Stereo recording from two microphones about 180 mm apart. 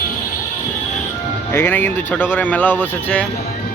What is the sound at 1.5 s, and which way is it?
A man's voice, 10° left (ahead or behind).